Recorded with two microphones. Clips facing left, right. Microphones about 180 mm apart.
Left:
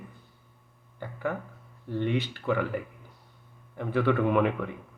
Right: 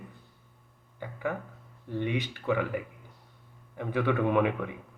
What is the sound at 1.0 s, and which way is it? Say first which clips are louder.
Speech: left 1 dB; 15° right (ahead or behind).